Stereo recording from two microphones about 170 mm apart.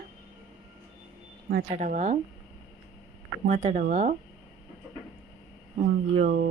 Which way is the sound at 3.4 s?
40° right (ahead or behind).